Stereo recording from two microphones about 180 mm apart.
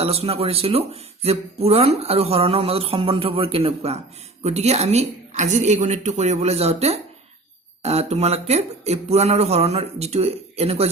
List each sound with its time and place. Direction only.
0.0 s speech: 35° right (ahead or behind)